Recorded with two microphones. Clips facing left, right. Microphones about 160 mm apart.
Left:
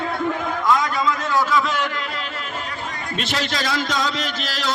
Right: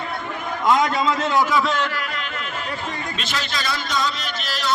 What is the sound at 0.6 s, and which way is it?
A man's voice, 25° right (ahead or behind).